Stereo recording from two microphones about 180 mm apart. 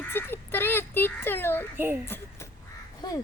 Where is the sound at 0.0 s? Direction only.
10° left (ahead or behind).